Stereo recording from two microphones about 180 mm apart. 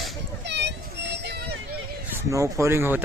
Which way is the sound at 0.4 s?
70° right (ahead or behind).